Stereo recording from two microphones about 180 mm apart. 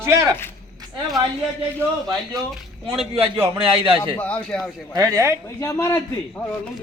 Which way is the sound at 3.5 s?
30° right (ahead or behind).